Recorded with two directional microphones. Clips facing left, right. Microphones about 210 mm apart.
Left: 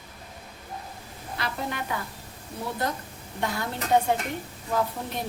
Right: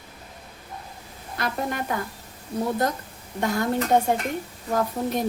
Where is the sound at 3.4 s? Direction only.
45° right (ahead or behind).